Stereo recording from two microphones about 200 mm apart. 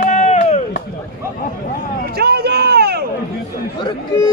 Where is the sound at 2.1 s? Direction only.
50° right (ahead or behind).